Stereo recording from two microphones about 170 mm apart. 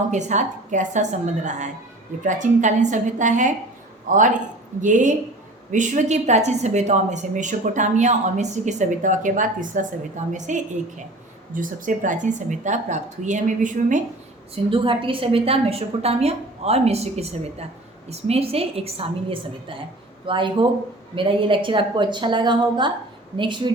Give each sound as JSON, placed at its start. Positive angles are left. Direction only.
{"t": 0.1, "sound": "a woman's voice", "side_deg": -45}
{"t": 14.5, "sound": "a woman's voice", "side_deg": -30}